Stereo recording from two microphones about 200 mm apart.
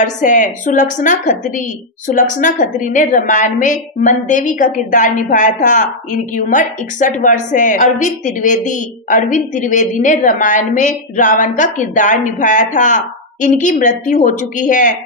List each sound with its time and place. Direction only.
0.0 s a woman's voice: 40° left (ahead or behind)